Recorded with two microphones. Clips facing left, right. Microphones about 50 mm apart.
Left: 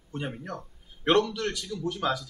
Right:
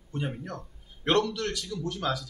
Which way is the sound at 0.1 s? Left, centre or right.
Centre.